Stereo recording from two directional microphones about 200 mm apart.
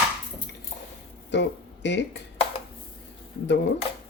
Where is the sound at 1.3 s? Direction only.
60° left (ahead or behind).